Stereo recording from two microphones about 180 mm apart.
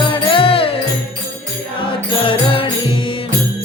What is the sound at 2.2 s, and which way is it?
Music, 30° left (ahead or behind).